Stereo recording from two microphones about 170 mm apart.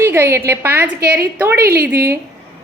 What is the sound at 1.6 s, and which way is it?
Speech, 65° right (ahead or behind).